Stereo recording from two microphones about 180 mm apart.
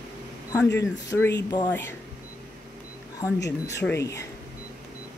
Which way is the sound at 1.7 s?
15° left (ahead or behind).